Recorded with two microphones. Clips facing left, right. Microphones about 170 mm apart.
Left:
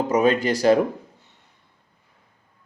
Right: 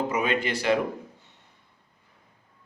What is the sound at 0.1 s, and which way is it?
Speech, 40° left (ahead or behind).